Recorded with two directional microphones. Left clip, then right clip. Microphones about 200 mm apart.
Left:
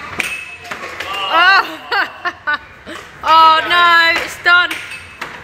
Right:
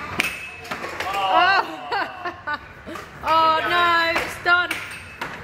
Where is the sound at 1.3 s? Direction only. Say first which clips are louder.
Left 8 dB; centre (ahead or behind).